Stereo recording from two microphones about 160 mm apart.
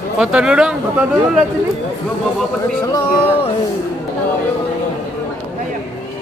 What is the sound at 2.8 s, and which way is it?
Speech, 20° left (ahead or behind).